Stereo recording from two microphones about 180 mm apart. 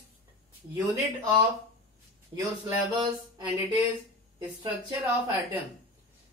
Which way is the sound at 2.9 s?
25° right (ahead or behind).